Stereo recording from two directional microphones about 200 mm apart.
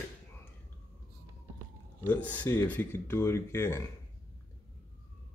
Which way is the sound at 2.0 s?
5° left (ahead or behind).